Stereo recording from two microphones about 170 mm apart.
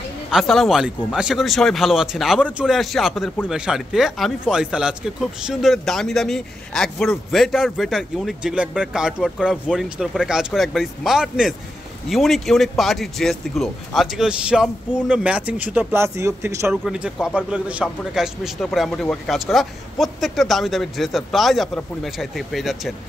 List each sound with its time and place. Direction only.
0.3 s speech: centre (ahead or behind); by 16.7 s 15° right (ahead or behind)
16.8 s speech: 5° right (ahead or behind)